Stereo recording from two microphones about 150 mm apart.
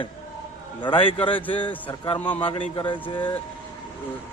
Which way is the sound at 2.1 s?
10° left (ahead or behind).